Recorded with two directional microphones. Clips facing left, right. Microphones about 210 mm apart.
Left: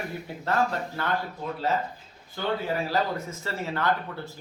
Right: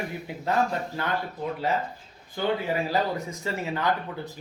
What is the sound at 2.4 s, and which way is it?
Speech, 15° right (ahead or behind).